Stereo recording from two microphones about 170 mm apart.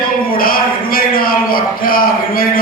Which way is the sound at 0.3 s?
60° left (ahead or behind).